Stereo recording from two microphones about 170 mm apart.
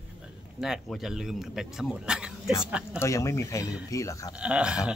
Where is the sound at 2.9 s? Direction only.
15° left (ahead or behind).